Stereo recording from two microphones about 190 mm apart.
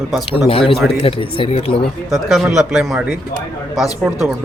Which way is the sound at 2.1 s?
Centre (ahead or behind).